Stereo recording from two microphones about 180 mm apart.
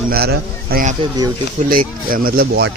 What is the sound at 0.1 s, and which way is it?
Speech, 60° right (ahead or behind).